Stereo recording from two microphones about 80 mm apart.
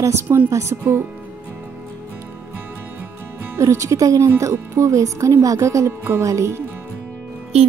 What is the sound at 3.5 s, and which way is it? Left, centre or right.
Speech, right.